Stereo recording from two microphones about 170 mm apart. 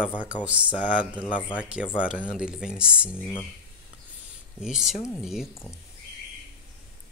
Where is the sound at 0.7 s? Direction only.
50° left (ahead or behind).